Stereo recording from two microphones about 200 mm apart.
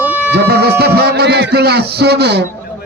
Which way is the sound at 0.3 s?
55° right (ahead or behind).